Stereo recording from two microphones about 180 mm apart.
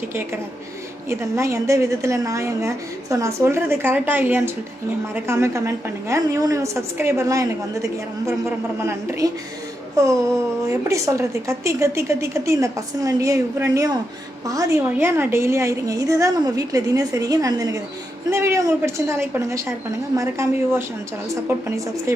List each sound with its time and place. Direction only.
1.4 s a woman's voice: 15° right (ahead or behind)
10.0 s a sound: 20° right (ahead or behind)
10.7 s a woman's voice: 15° right (ahead or behind)